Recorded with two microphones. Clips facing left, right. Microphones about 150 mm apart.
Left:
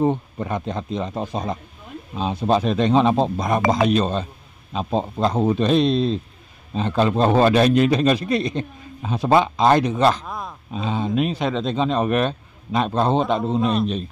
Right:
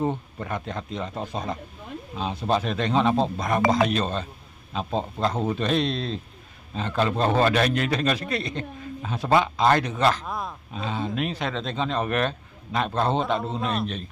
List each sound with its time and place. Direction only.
0.0 s a man's voice: 20° left (ahead or behind)
10.2 s speech: centre (ahead or behind)
10.7 s a man's voice: 20° left (ahead or behind)